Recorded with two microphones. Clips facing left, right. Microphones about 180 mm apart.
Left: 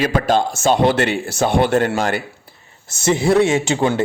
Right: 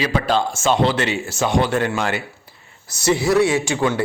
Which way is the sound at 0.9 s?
55° left (ahead or behind).